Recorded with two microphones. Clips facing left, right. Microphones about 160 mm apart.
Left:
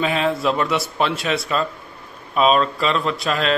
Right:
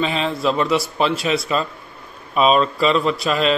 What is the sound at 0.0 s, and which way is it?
Speech, 5° left (ahead or behind).